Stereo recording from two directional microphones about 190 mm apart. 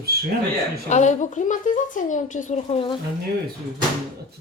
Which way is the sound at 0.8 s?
40° left (ahead or behind).